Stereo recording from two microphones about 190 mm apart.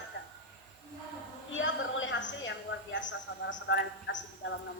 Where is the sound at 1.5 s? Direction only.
85° left.